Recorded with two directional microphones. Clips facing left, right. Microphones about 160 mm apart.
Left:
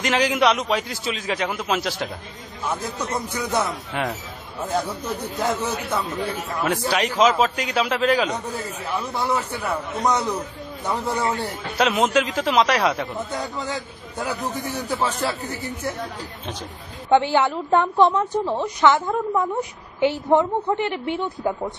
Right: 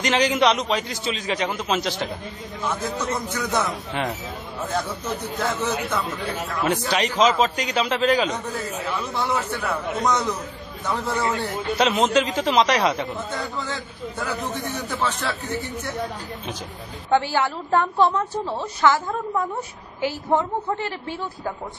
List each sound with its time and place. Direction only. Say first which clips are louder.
0.0 s a man's voice: even; 5° left (ahead or behind)
3.3 s a man's voice: left 2 dB; 5° left (ahead or behind)
5.2 s a man's voice: left 2 dB; 10° left (ahead or behind)
17.1 s a woman's voice: left 3 dB; 20° left (ahead or behind)